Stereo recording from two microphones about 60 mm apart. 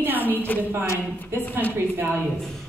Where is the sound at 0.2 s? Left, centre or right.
Left.